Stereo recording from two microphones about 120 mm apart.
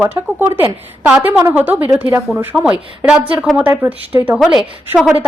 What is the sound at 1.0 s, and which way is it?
A woman's voice, 5° right (ahead or behind).